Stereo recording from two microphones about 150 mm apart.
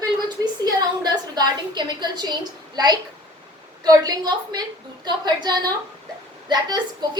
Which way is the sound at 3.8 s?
25° right (ahead or behind).